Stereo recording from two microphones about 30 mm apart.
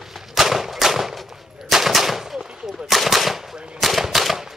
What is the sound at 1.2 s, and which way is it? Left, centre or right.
Machine gun, centre.